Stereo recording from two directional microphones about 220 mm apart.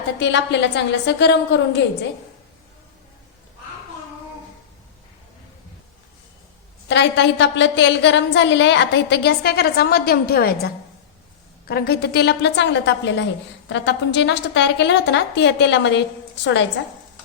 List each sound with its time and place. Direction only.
0.2 s a woman's voice: 55° left (ahead or behind)
6.8 s a woman's voice: 55° left (ahead or behind)
11.7 s a woman's voice: 45° left (ahead or behind)